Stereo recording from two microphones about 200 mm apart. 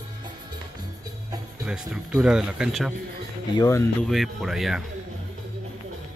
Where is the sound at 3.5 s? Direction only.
15° left (ahead or behind).